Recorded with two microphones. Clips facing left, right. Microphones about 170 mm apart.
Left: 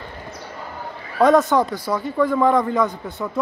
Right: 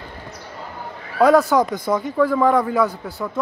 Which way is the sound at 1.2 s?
5° right (ahead or behind).